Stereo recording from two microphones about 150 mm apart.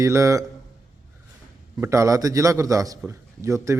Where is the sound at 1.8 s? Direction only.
20° right (ahead or behind).